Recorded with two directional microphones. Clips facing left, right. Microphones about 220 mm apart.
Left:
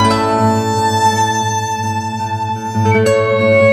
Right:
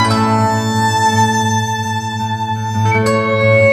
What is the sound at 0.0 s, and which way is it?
Music, 30° left (ahead or behind).